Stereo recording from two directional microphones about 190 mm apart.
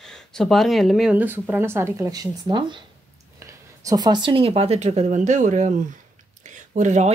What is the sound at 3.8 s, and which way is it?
Speech, 20° right (ahead or behind).